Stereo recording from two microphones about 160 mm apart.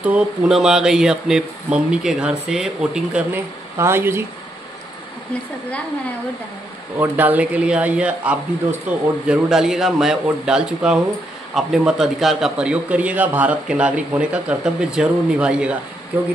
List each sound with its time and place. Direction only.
0.0 s a man's voice: 5° right (ahead or behind)
7.0 s a man's voice: 10° right (ahead or behind)